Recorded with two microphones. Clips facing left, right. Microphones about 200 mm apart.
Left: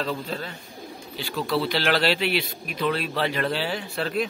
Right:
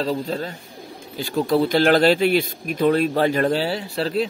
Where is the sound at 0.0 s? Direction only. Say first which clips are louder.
Right 6 dB; 40° right (ahead or behind).